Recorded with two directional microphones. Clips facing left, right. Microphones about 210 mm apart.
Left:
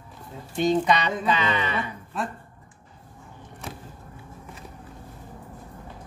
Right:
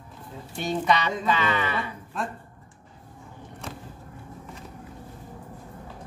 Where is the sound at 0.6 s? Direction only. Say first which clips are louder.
Left 3 dB; 15° left (ahead or behind).